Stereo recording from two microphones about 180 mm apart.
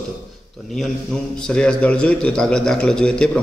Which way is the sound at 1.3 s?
5° left (ahead or behind).